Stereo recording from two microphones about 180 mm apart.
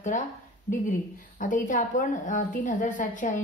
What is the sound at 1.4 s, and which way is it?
A woman's voice, 45° left (ahead or behind).